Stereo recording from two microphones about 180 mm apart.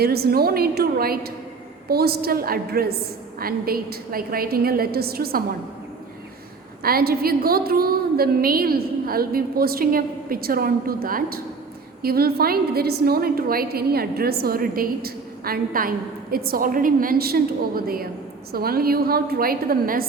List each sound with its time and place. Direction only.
0.0 s a woman's voice: 60° right (ahead or behind)
6.8 s a woman's voice: 55° right (ahead or behind)